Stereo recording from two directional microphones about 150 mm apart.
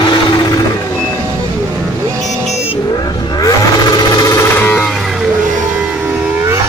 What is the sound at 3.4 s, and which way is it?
Wild animals, 25° left (ahead or behind).